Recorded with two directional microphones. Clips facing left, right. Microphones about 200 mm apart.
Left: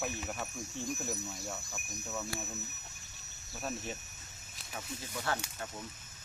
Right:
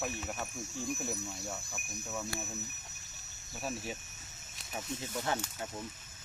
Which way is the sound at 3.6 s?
Centre (ahead or behind).